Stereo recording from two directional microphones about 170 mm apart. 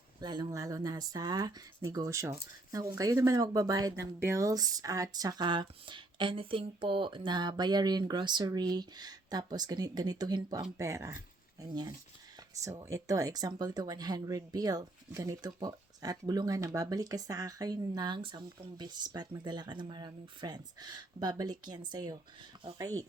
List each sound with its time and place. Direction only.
0.2 s speech: 25° right (ahead or behind)